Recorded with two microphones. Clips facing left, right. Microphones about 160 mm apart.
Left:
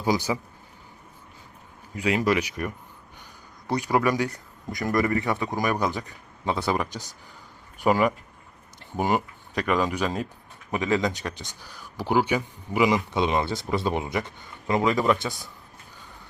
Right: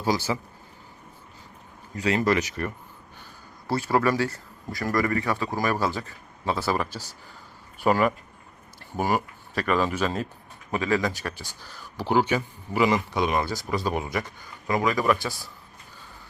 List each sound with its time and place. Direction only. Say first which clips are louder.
0.0 s speech: left 1 dB; 15° left (ahead or behind)
2.0 s speech: even; 10° left (ahead or behind)